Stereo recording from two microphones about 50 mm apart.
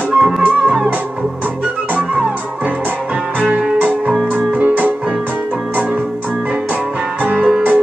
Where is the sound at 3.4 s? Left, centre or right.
Right.